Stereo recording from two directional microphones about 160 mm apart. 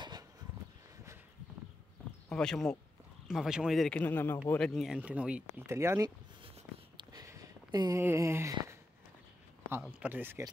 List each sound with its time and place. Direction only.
2.2 s speech: 5° left (ahead or behind); by 6.1 s 20° right (ahead or behind)
7.0 s a sound: 25° right (ahead or behind)
9.7 s speech: 10° right (ahead or behind)